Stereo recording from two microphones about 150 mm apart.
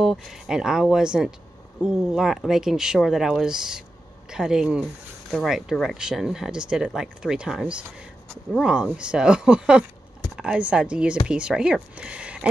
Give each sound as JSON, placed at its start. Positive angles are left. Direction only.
{"t": 0.0, "sound": "speech", "side_deg": 0}